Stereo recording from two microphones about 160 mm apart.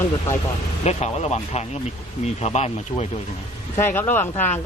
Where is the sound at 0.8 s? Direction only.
45° left (ahead or behind).